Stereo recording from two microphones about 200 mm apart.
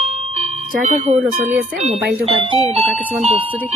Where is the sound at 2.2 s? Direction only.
30° right (ahead or behind).